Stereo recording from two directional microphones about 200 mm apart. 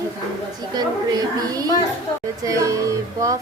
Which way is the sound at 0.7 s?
20° right (ahead or behind).